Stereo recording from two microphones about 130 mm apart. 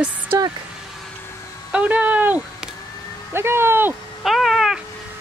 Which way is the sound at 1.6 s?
10° right (ahead or behind).